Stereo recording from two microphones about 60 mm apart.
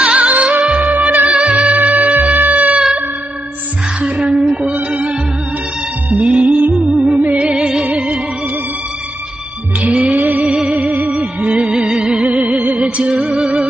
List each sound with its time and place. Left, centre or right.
0.0 s music: right
4.0 s music: centre
9.8 s music: right